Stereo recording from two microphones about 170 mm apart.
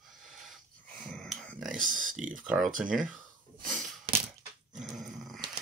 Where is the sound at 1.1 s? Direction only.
5° left (ahead or behind).